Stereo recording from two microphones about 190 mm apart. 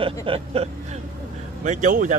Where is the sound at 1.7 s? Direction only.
40° right (ahead or behind).